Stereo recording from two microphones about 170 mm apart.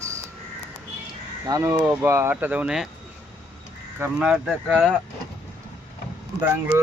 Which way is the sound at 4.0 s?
5° right (ahead or behind).